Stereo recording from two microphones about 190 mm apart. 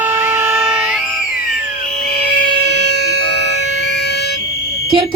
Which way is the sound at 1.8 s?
55° left (ahead or behind).